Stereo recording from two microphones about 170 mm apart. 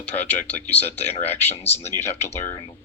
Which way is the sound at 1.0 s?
40° left (ahead or behind).